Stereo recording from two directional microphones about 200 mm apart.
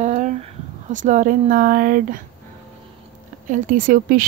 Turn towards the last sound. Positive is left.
turn(degrees=-45)  # may be behind; listen again after turning